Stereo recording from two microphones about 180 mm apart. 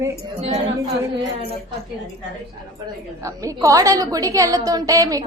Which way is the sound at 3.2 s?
20° right (ahead or behind).